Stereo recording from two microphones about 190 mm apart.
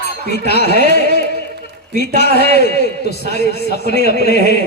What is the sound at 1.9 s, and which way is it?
A man's voice, 60° left (ahead or behind).